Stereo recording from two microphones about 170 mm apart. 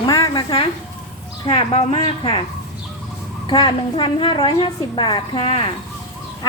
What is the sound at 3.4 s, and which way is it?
A child's voice, 30° left (ahead or behind).